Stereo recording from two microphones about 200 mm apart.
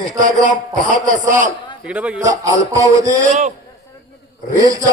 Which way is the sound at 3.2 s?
35° right (ahead or behind).